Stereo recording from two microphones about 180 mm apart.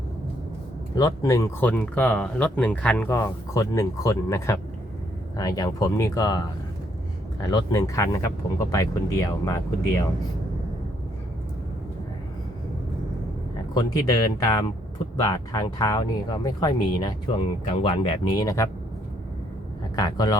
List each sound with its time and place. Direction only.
0.9 s speech: 20° left (ahead or behind)
13.7 s speech: 20° left (ahead or behind)
20.0 s speech: 20° left (ahead or behind)